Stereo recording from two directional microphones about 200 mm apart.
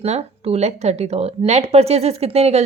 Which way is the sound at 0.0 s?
35° right (ahead or behind).